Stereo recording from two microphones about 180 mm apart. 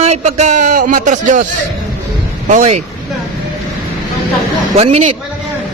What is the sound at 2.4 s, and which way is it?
Speech, 40° right (ahead or behind).